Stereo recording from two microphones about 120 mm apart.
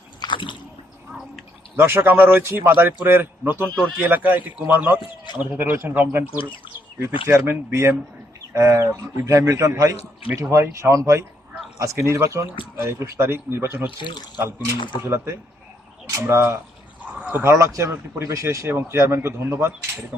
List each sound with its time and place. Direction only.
0.2 s a sound: 40° left (ahead or behind)
1.7 s a man's voice: 20° right (ahead or behind)
4.9 s speech: 40° left (ahead or behind)
5.4 s a man's voice: 15° right (ahead or behind)
14.0 s speech: 40° left (ahead or behind)
14.3 s speech: 20° right (ahead or behind)
14.8 s speech: 40° left (ahead or behind)
15.0 s speech: 20° right (ahead or behind)
17.2 s a sound: 10° right (ahead or behind)
17.4 s speech: 25° right (ahead or behind)